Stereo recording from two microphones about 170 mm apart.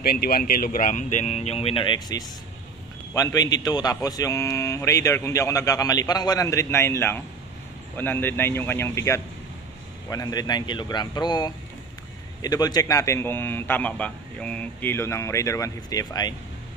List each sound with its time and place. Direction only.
0.0 s a man's voice: 65° left (ahead or behind); by 16.3 s 25° left (ahead or behind)